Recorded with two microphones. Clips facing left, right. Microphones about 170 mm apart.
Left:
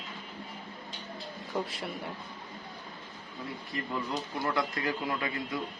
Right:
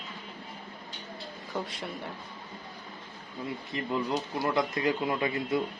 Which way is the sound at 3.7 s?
20° right (ahead or behind).